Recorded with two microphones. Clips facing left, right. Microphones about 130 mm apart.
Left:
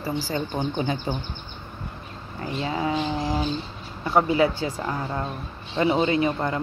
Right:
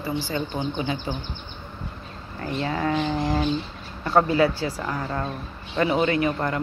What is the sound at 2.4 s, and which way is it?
Speech, 15° left (ahead or behind).